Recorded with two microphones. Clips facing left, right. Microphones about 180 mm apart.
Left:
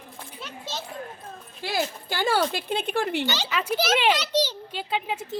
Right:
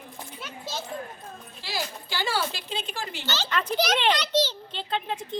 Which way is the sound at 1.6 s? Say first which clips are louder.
Left 6 dB; 50° left (ahead or behind).